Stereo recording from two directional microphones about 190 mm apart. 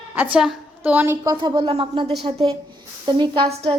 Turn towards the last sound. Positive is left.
turn(degrees=-30)  # may be behind; listen again after turning